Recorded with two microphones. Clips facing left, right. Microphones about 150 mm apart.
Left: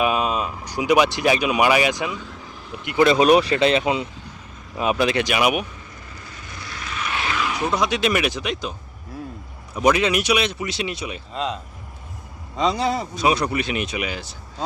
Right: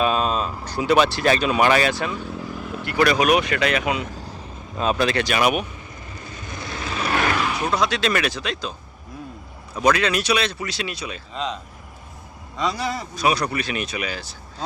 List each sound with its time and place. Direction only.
0.0 s speech: 10° left (ahead or behind)
4.8 s speech: 15° left (ahead or behind)
6.7 s vehicle: 30° right (ahead or behind)
7.7 s speech: 20° left (ahead or behind)
9.7 s speech: 20° left (ahead or behind)
12.5 s speech: 20° left (ahead or behind)